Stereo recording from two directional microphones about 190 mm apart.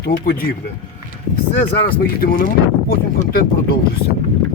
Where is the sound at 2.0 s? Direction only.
50° left (ahead or behind).